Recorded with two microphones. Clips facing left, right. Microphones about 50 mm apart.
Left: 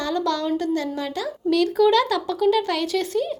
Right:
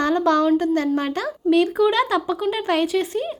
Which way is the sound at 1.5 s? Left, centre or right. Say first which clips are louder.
Even; right.